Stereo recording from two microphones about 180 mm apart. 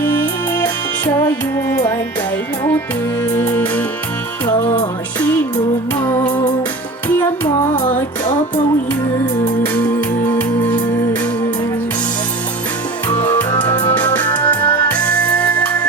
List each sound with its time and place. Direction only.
0.6 s music: 10° left (ahead or behind)
3.3 s music: 10° left (ahead or behind)
6.0 s music: 10° left (ahead or behind)
7.4 s music: 25° left (ahead or behind)
9.7 s music: 10° left (ahead or behind)
13.1 s music: 10° left (ahead or behind)